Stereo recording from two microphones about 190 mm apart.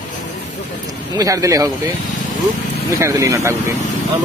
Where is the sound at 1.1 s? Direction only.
15° right (ahead or behind).